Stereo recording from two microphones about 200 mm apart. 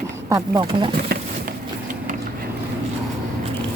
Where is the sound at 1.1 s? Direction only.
50° right (ahead or behind).